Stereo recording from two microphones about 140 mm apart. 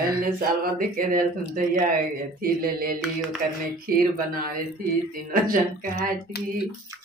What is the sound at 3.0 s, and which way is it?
Mantra, centre (ahead or behind).